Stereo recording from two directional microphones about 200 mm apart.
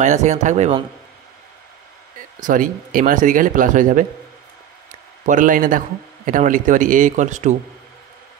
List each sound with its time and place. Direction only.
0.0 s a man's voice: 35° right (ahead or behind)
2.4 s a man's voice: 40° right (ahead or behind)
5.2 s a man's voice: 40° right (ahead or behind)